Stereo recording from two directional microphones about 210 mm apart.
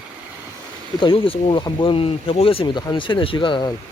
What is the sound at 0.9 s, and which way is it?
Speech, 25° left (ahead or behind).